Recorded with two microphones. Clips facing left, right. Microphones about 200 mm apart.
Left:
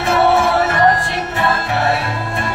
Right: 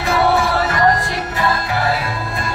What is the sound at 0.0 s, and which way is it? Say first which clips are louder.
Music: left 2 dB; 25° left (ahead or behind).